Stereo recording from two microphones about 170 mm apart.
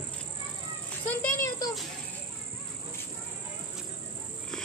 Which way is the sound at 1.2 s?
20° left (ahead or behind).